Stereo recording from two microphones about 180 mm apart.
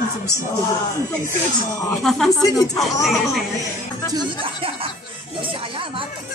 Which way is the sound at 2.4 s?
20° left (ahead or behind).